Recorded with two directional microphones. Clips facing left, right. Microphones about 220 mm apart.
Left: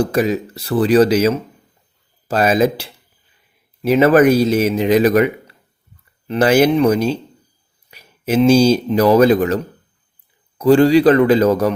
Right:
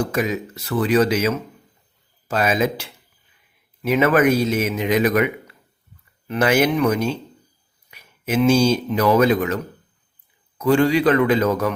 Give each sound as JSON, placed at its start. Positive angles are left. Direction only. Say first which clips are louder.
{"t": 0.0, "sound": "speech", "louder": "left 5 dB", "side_deg": 35}
{"t": 10.6, "sound": "speech", "louder": "left 6 dB", "side_deg": 35}